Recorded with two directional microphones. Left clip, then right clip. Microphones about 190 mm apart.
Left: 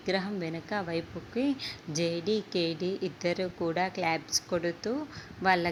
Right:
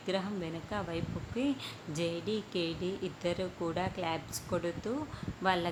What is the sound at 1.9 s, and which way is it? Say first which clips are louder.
Music: left 5 dB; centre (ahead or behind).